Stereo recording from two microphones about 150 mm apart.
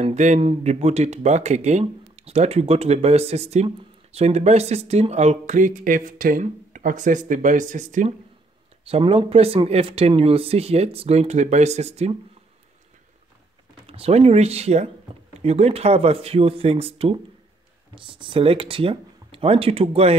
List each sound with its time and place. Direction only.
0.0 s speech: 50° right (ahead or behind)
8.8 s speech: 40° right (ahead or behind)
13.8 s speech: 40° right (ahead or behind)